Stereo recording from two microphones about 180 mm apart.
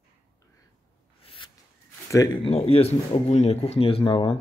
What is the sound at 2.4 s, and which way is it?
Speech, 35° left (ahead or behind).